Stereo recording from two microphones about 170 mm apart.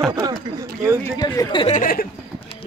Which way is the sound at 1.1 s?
20° left (ahead or behind).